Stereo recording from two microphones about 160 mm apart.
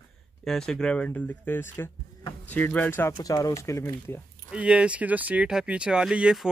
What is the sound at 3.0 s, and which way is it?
Speech, 20° left (ahead or behind).